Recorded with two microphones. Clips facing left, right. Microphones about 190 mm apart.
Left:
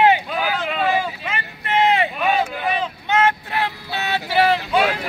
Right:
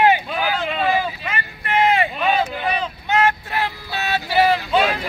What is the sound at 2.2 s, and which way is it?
Vehicle, 10° left (ahead or behind).